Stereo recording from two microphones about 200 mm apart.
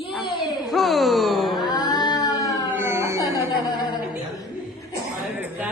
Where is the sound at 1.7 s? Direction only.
20° left (ahead or behind).